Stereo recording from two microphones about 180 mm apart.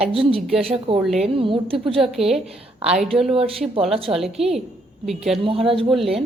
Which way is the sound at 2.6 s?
35° right (ahead or behind).